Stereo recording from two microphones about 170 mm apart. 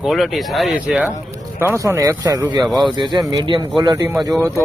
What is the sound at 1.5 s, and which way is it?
Speech, 15° right (ahead or behind).